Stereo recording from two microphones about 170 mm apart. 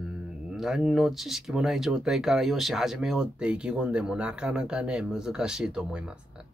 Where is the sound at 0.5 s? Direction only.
Centre (ahead or behind).